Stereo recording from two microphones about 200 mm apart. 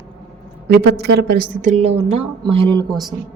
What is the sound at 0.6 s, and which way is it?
A woman's voice, 55° right (ahead or behind).